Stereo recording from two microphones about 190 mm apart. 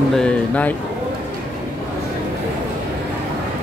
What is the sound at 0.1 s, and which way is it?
Speech, 5° left (ahead or behind).